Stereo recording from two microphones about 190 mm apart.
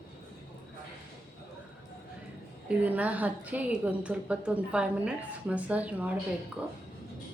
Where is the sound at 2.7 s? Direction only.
10° right (ahead or behind).